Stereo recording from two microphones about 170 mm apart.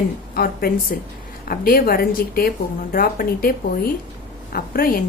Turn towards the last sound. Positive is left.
turn(degrees=60)  # may be behind; listen again after turning